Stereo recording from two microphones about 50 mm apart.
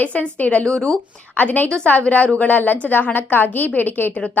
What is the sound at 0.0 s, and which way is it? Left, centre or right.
Speech, left.